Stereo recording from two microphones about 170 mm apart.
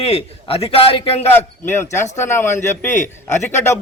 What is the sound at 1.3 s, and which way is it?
A man's voice, 15° left (ahead or behind).